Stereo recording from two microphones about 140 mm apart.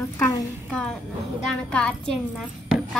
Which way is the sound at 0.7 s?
5° left (ahead or behind).